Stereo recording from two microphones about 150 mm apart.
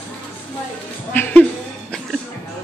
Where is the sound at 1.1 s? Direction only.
15° left (ahead or behind).